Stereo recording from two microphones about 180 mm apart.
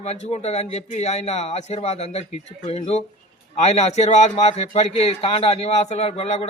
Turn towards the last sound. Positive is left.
turn(degrees=35)  # may be behind; listen again after turning